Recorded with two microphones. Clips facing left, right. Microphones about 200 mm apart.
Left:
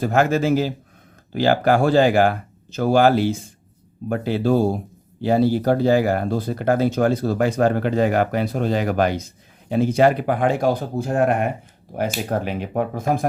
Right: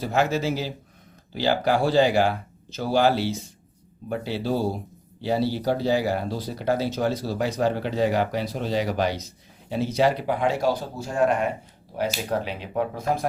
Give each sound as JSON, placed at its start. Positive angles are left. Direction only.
{"t": 0.0, "sound": "speech", "side_deg": 50}